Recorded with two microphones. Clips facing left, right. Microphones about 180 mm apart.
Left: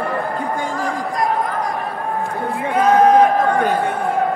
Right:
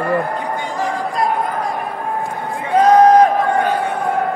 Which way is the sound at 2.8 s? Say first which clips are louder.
Right 3 dB; 40° right (ahead or behind).